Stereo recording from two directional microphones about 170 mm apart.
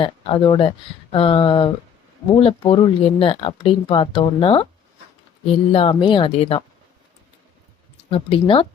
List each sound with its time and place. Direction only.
0.0 s speech: 30° left (ahead or behind)
5.7 s speech: 35° left (ahead or behind)
8.1 s speech: 30° left (ahead or behind)